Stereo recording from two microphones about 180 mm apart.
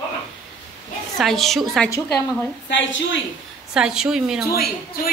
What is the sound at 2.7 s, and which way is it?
Speech, 90° left.